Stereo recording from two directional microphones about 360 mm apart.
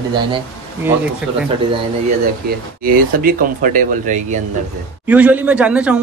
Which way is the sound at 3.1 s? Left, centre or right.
Right.